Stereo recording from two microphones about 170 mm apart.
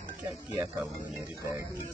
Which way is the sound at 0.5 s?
20° right (ahead or behind).